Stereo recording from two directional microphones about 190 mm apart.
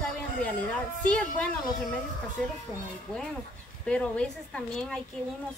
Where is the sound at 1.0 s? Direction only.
5° left (ahead or behind).